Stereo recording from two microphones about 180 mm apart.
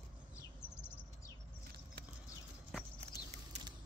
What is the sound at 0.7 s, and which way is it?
Chirp, 15° left (ahead or behind).